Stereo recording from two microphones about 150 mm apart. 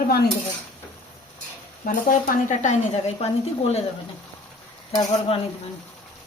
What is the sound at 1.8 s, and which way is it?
Speech, 60° left (ahead or behind).